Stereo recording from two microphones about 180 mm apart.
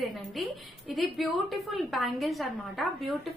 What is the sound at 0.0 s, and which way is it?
A woman's voice, centre (ahead or behind).